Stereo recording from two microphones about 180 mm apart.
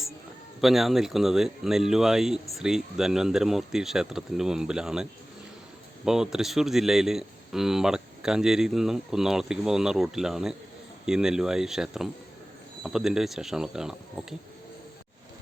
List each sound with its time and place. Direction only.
0.6 s speech: centre (ahead or behind)
6.1 s speech: centre (ahead or behind)